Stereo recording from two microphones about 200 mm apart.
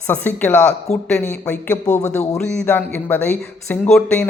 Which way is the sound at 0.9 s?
35° left (ahead or behind).